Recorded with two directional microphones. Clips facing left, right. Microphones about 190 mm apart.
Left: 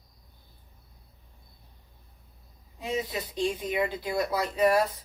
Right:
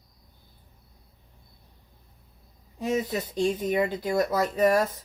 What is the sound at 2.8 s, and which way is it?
Speech, 45° right (ahead or behind).